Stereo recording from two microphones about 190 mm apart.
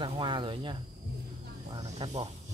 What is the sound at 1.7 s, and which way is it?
Snake, 35° right (ahead or behind).